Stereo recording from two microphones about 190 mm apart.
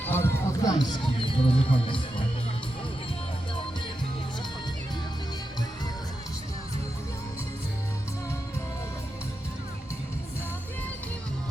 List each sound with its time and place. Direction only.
0.0 s music: 10° left (ahead or behind); by 2.2 s 25° left (ahead or behind)